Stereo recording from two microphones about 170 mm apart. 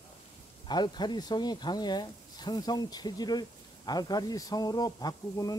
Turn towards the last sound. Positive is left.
turn(degrees=20)  # may be behind; listen again after turning